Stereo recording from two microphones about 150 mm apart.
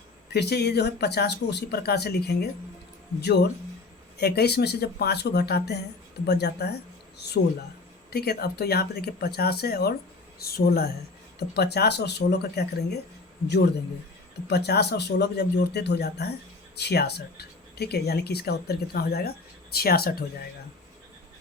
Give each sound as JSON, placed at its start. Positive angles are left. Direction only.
{"t": 0.3, "sound": "speech", "side_deg": 90}
{"t": 8.1, "sound": "speech", "side_deg": 90}
{"t": 14.5, "sound": "speech", "side_deg": 90}